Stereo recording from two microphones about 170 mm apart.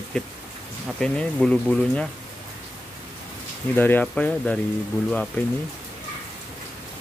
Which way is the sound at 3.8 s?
10° left (ahead or behind).